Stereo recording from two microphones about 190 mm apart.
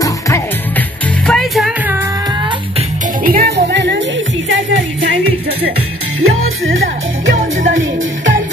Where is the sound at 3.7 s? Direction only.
70° right (ahead or behind).